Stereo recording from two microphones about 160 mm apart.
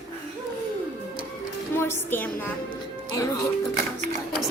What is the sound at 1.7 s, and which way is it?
Speech, 15° left (ahead or behind).